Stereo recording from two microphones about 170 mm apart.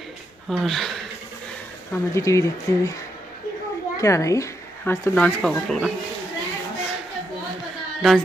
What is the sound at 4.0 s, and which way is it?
Speech, 20° left (ahead or behind).